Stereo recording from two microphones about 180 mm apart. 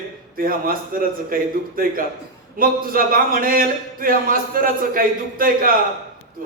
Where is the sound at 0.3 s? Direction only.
55° right (ahead or behind).